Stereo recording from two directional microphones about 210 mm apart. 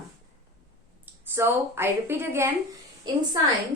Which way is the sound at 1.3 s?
10° right (ahead or behind).